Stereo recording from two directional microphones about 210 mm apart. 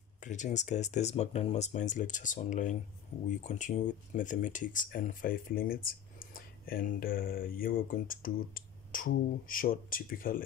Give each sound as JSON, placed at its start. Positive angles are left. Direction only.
{"t": 0.2, "sound": "speech", "side_deg": 35}